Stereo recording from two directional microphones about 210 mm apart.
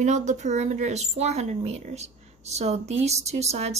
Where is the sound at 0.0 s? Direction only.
35° right (ahead or behind).